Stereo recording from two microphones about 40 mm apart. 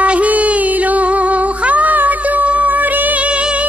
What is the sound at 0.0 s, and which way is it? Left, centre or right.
Cat, right.